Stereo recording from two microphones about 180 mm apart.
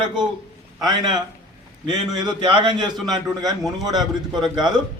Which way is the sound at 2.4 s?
25° right (ahead or behind).